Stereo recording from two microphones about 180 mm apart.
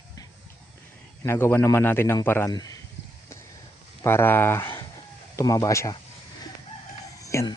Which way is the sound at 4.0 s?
15° left (ahead or behind).